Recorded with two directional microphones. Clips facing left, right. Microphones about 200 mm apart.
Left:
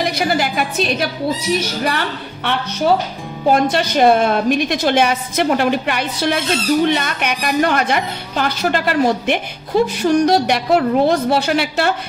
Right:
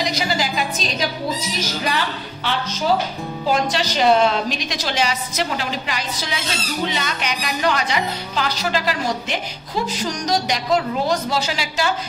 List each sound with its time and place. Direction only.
0.0 s a woman's voice: 55° left (ahead or behind)